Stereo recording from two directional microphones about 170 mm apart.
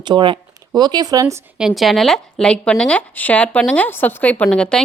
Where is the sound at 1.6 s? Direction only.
Centre (ahead or behind).